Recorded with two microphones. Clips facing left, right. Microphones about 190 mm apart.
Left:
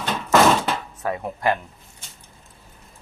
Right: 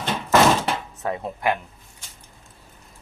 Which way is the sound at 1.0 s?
25° right (ahead or behind).